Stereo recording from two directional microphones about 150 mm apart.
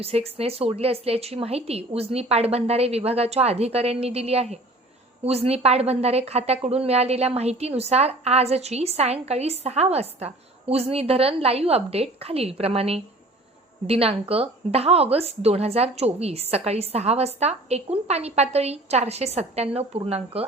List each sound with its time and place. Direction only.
0.0 s a woman's voice: 40° right (ahead or behind)